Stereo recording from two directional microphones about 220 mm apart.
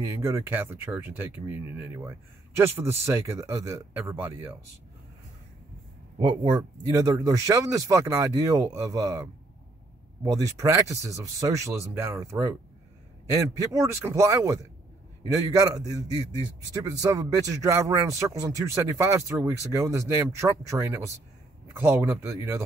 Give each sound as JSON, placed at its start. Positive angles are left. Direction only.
{"t": 0.0, "sound": "speech", "side_deg": -15}
{"t": 6.1, "sound": "speech", "side_deg": -20}